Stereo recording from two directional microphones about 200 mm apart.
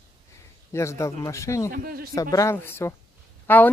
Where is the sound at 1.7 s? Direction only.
45° right (ahead or behind).